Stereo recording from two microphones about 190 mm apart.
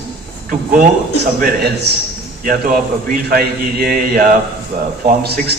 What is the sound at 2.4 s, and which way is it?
A man's voice, 45° right (ahead or behind).